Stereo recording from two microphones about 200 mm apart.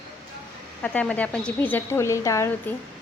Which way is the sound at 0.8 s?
5° left (ahead or behind).